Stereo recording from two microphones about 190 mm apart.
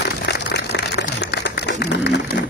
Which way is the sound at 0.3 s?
60° left (ahead or behind).